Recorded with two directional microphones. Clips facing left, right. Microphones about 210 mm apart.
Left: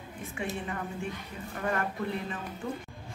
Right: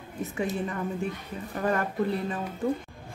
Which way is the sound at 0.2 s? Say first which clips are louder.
Right 7 dB; 40° right (ahead or behind).